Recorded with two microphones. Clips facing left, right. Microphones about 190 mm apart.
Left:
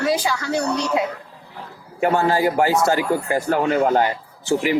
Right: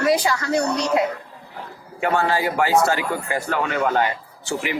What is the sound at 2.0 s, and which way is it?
A man's voice, 40° left (ahead or behind).